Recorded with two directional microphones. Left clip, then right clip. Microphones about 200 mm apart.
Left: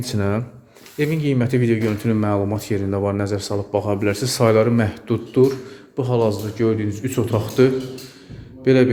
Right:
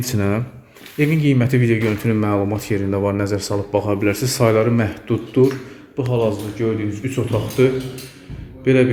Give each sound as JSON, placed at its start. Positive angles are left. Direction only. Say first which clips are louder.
{"t": 0.0, "sound": "speech", "louder": "right 2 dB", "side_deg": 0}